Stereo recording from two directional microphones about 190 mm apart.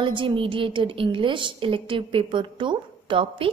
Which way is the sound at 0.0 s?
25° right (ahead or behind).